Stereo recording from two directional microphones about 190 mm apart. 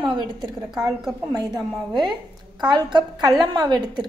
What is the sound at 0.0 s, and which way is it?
A woman's voice, 25° right (ahead or behind).